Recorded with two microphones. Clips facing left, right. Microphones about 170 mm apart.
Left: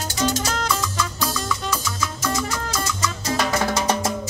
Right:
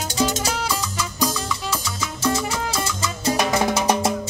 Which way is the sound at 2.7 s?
30° right (ahead or behind).